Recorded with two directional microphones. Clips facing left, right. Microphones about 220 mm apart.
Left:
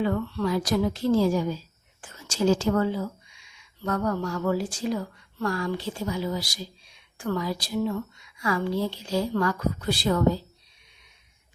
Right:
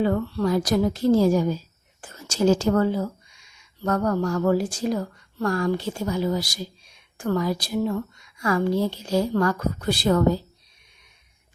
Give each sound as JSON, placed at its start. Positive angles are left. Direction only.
{"t": 0.0, "sound": "a woman's voice", "side_deg": -35}